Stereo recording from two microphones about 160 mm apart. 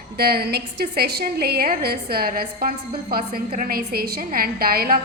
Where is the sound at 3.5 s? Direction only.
60° right (ahead or behind).